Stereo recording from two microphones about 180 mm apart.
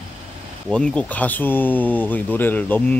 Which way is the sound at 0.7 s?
5° left (ahead or behind).